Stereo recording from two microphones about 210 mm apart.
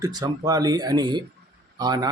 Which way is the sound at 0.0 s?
20° right (ahead or behind).